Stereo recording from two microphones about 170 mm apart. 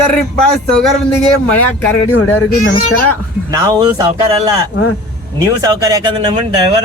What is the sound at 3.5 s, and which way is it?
Speech, 25° right (ahead or behind).